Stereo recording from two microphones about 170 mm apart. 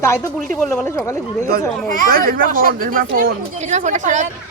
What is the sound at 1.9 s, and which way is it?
A child's voice, 55° right (ahead or behind).